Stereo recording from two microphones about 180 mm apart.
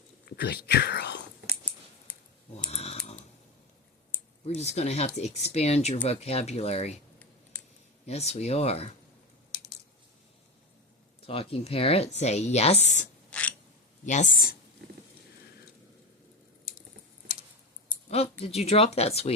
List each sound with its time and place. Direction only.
0.3 s speech: 65° left (ahead or behind)
2.6 s typing: 35° left (ahead or behind)
4.4 s speech: 35° left (ahead or behind)
8.0 s speech: 35° left (ahead or behind)
11.3 s speech: 30° left (ahead or behind)
13.3 s a sound: 5° left (ahead or behind)
14.0 s speech: 45° left (ahead or behind)
14.8 s a sound: 60° right (ahead or behind)
18.1 s speech: 35° left (ahead or behind)